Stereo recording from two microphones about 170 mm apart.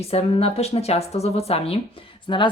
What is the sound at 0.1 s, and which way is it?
Speech, 35° left (ahead or behind).